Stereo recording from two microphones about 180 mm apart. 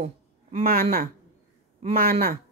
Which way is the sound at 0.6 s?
55° right (ahead or behind).